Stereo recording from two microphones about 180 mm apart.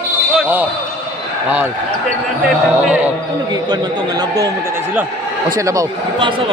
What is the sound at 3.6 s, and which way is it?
Speech, 25° right (ahead or behind).